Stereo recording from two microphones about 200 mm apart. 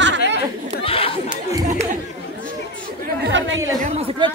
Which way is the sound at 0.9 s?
30° left (ahead or behind).